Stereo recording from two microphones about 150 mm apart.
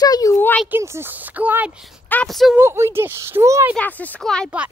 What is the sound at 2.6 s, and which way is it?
Speech, 15° right (ahead or behind).